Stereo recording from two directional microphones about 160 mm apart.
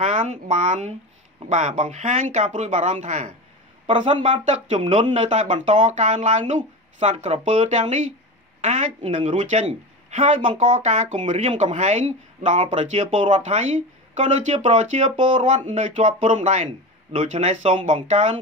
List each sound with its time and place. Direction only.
0.0 s speech: 50° right (ahead or behind)
4.1 s speech: 35° right (ahead or behind)